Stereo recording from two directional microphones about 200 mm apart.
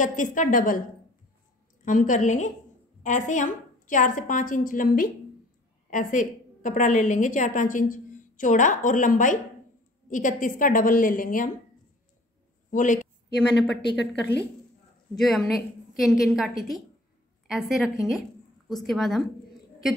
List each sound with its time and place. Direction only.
0.0 s a woman's voice: 40° left (ahead or behind)
1.9 s a woman's voice: 40° left (ahead or behind)
12.7 s a woman's voice: 40° left (ahead or behind)
13.9 s a woman's voice: 60° left (ahead or behind)
15.1 s a woman's voice: centre (ahead or behind)